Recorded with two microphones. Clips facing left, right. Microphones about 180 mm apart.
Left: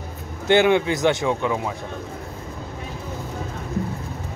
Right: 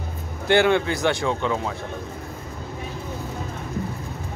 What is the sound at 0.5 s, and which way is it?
A man's voice, 15° left (ahead or behind).